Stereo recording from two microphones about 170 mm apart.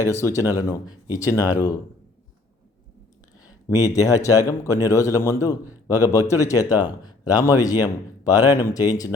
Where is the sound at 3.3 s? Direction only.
20° left (ahead or behind).